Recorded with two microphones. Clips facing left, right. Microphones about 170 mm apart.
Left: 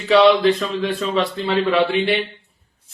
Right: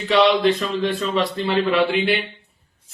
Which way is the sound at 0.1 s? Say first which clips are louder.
Left 3 dB; centre (ahead or behind).